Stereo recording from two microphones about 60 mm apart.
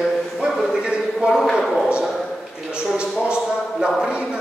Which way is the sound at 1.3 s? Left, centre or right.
Centre.